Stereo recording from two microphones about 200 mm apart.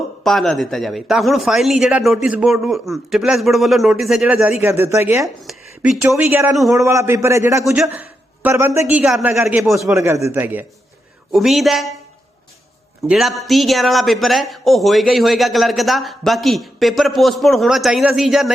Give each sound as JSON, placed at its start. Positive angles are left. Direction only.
{"t": 0.3, "sound": "a man's voice", "side_deg": 0}
{"t": 5.4, "sound": "speech", "side_deg": 0}
{"t": 6.7, "sound": "a man's voice", "side_deg": -15}
{"t": 13.1, "sound": "speech", "side_deg": 0}